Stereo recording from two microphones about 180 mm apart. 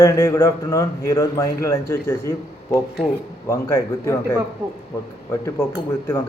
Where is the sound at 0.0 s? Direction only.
15° left (ahead or behind).